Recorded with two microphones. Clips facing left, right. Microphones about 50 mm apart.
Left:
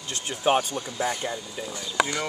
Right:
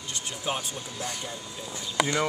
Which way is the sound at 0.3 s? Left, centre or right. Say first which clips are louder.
Left 10 dB; left.